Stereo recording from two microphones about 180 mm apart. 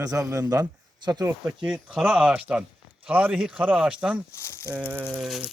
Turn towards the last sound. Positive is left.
turn(degrees=0)  # may be behind; listen again after turning